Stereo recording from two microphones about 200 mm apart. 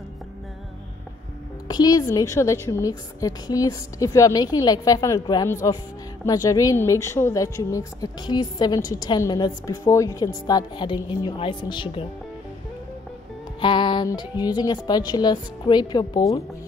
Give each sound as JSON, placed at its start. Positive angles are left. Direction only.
{"t": 1.7, "sound": "a woman's voice", "side_deg": 20}
{"t": 13.6, "sound": "speech", "side_deg": 25}